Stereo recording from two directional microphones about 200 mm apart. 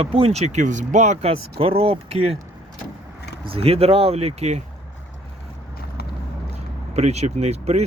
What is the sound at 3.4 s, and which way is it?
Speech, 30° right (ahead or behind).